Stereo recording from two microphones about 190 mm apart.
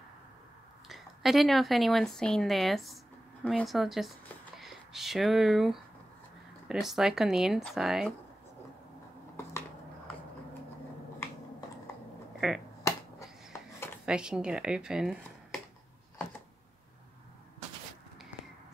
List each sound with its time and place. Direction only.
0.8 s speech: centre (ahead or behind)
12.4 s finger snapping: centre (ahead or behind)
12.8 s finger snapping: 15° left (ahead or behind)
14.0 s speech: 5° right (ahead or behind)